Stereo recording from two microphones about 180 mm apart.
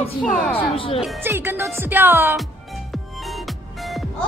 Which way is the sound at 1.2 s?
10° right (ahead or behind).